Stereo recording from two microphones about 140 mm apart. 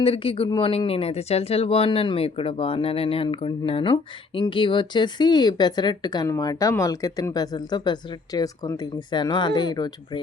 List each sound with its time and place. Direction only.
0.0 s speech: 40° left (ahead or behind)